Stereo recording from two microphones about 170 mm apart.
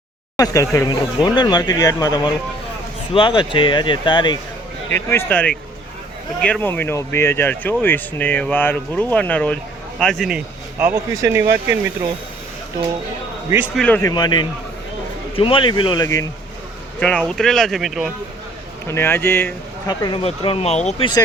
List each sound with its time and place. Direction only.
0.3 s speech: 20° left (ahead or behind)
4.9 s speech: 15° left (ahead or behind); by 11.8 s 15° right (ahead or behind)
13.7 s speech: 10° left (ahead or behind)
14.1 s speech: 25° left (ahead or behind)
17.0 s speech: 5° left (ahead or behind)
18.9 s speech: 15° left (ahead or behind); by 21.1 s 40° left (ahead or behind)